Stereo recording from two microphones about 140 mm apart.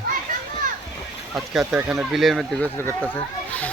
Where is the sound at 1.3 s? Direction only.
5° right (ahead or behind).